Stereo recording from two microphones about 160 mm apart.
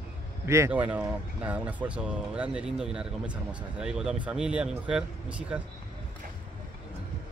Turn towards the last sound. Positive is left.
turn(degrees=-10)  # may be behind; listen again after turning